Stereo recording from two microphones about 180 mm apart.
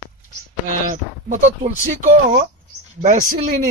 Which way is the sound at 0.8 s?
45° right (ahead or behind).